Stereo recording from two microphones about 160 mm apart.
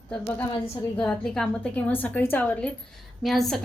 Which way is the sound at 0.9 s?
5° left (ahead or behind).